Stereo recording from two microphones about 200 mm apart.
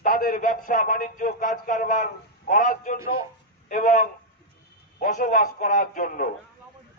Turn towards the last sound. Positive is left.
turn(degrees=45)  # may be behind; listen again after turning